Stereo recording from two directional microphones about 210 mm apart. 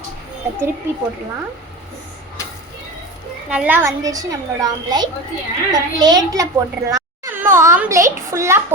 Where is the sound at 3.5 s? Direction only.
10° right (ahead or behind).